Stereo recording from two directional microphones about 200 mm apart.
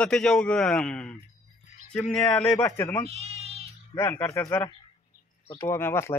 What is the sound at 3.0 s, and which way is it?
Bleat, 30° right (ahead or behind).